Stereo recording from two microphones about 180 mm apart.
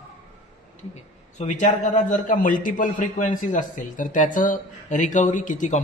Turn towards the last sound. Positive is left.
turn(degrees=45)  # may be behind; listen again after turning